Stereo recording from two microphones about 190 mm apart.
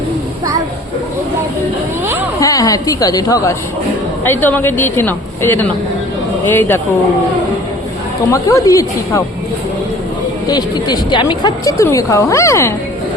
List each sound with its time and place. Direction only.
2.4 s a woman's voice: 20° left (ahead or behind)
8.3 s a woman's voice: 15° left (ahead or behind)
10.5 s a woman's voice: 20° left (ahead or behind)